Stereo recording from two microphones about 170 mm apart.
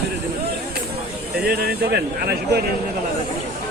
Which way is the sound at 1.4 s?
70° right (ahead or behind).